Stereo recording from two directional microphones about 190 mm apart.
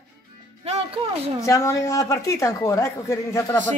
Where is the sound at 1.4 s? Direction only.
15° left (ahead or behind).